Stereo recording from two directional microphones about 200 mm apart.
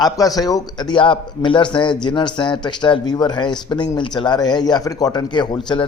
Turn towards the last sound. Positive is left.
turn(degrees=25)  # may be behind; listen again after turning